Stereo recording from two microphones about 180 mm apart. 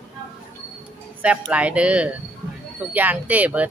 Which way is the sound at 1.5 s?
5° right (ahead or behind).